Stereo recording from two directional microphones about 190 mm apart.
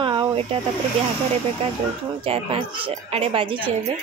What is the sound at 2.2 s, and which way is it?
A woman's voice, 30° right (ahead or behind).